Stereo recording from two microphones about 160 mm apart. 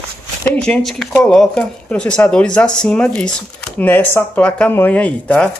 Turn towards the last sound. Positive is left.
turn(degrees=10)  # may be behind; listen again after turning